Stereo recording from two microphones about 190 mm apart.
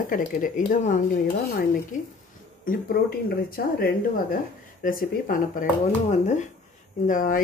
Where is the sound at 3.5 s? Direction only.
50° left (ahead or behind).